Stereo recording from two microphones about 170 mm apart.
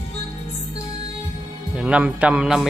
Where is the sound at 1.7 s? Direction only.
5° right (ahead or behind).